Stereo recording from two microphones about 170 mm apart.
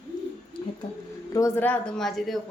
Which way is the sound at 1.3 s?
15° left (ahead or behind).